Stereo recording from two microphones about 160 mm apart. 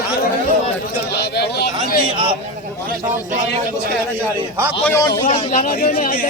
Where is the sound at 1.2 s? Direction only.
90° left.